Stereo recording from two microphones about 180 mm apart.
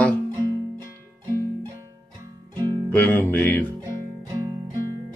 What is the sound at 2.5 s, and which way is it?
Music, 25° right (ahead or behind).